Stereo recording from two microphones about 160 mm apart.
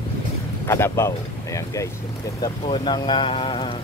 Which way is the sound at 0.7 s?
15° left (ahead or behind).